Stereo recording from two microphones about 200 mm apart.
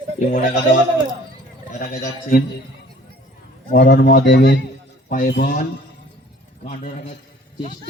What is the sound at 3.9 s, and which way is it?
Speech, 55° left (ahead or behind).